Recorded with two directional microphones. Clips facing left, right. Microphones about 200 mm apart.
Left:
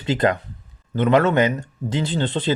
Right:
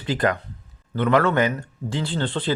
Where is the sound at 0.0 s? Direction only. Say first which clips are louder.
Left 3 dB; 25° left (ahead or behind).